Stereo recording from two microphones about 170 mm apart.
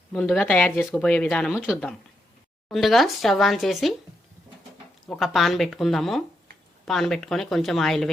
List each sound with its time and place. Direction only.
0.1 s speech: 5° left (ahead or behind)
5.0 s speech: centre (ahead or behind)